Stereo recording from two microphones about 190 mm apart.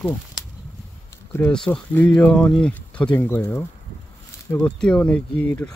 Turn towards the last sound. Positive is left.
turn(degrees=10)  # may be behind; listen again after turning